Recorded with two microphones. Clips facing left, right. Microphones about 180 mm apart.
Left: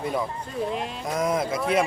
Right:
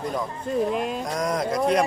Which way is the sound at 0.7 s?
50° right (ahead or behind).